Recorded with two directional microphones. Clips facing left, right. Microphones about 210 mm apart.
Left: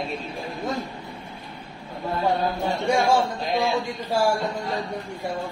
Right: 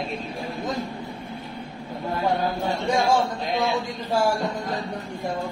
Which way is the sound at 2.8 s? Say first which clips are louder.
Left 1 dB; 10° left (ahead or behind).